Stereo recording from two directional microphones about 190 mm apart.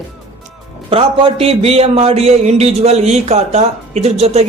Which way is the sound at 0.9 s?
30° right (ahead or behind).